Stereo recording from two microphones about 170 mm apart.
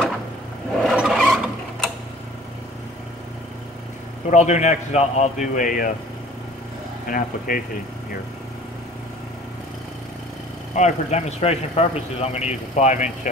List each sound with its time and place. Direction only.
0.8 s a sound: centre (ahead or behind)
4.3 s a man's voice: 40° left (ahead or behind)
7.1 s speech: 55° left (ahead or behind)
10.7 s a man's voice: 45° left (ahead or behind)